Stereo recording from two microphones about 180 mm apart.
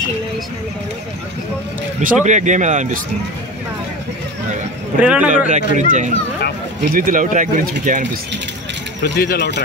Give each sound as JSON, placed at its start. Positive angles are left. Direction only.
{"t": 2.0, "sound": "a man's voice", "side_deg": -40}
{"t": 5.0, "sound": "a man's voice", "side_deg": -5}
{"t": 5.5, "sound": "speech", "side_deg": -45}
{"t": 9.1, "sound": "speech", "side_deg": 60}